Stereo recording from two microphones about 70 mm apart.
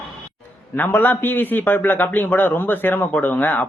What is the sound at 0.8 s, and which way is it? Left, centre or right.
Speech, left.